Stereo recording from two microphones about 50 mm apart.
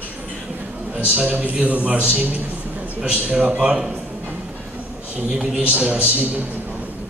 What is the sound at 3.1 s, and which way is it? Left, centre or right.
Speech, right.